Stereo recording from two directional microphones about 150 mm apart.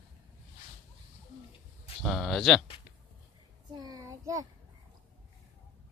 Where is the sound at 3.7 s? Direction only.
25° right (ahead or behind).